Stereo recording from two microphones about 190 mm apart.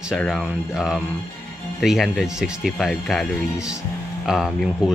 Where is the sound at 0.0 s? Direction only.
Centre (ahead or behind).